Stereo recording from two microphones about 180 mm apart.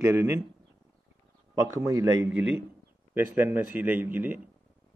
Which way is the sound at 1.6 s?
15° right (ahead or behind).